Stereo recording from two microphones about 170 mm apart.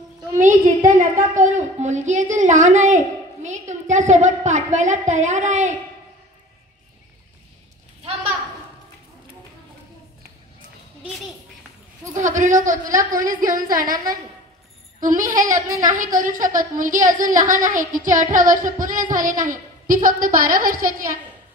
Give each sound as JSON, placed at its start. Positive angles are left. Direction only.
{"t": 0.4, "sound": "a woman's voice", "side_deg": -50}
{"t": 12.2, "sound": "a woman's voice", "side_deg": -45}
{"t": 15.0, "sound": "a woman's voice", "side_deg": -50}